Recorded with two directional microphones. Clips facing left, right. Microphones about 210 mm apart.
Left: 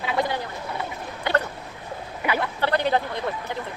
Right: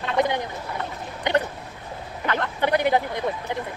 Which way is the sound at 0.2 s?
20° right (ahead or behind).